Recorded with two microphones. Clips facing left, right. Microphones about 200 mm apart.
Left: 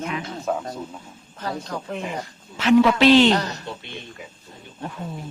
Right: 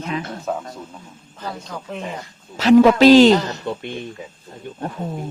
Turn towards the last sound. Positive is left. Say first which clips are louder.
# right 9 dB
turn(degrees=-50)  # may be behind; listen again after turning